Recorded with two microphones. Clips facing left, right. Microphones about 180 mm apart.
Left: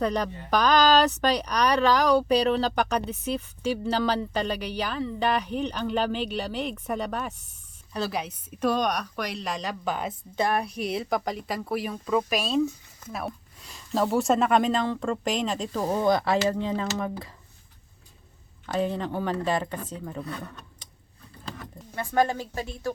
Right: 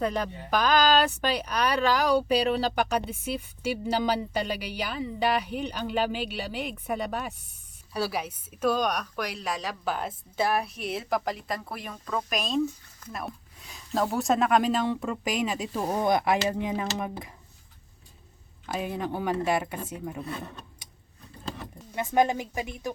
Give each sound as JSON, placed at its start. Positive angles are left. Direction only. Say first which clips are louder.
{"t": 0.0, "sound": "a woman's voice", "louder": "left 2 dB", "side_deg": -5}
{"t": 18.6, "sound": "speech", "louder": "left 4 dB", "side_deg": -10}
{"t": 20.2, "sound": "speech", "louder": "even", "side_deg": -25}